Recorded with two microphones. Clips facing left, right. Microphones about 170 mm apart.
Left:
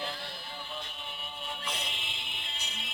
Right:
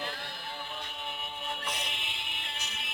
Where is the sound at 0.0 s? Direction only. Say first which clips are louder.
Even; 45° right (ahead or behind).